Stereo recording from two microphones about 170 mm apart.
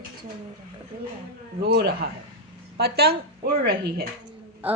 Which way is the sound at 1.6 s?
75° right (ahead or behind).